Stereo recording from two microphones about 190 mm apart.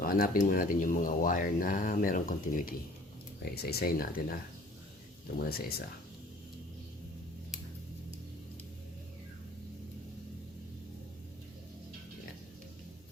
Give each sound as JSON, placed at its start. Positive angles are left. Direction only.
{"t": 0.0, "sound": "speech", "side_deg": 50}
{"t": 3.4, "sound": "speech", "side_deg": 55}
{"t": 5.4, "sound": "speech", "side_deg": 55}